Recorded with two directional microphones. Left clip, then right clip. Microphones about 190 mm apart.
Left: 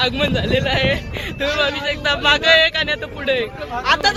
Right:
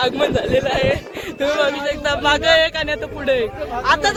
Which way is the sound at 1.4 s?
40° right (ahead or behind).